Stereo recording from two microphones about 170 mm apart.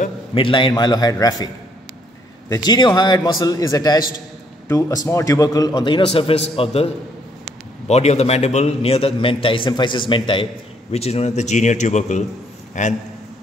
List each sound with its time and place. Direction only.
0.3 s a man's voice: 30° left (ahead or behind)
2.5 s a man's voice: 25° left (ahead or behind)
7.9 s a man's voice: 40° left (ahead or behind)